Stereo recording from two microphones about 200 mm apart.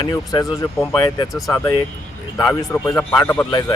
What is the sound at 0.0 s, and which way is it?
Speech, 20° left (ahead or behind).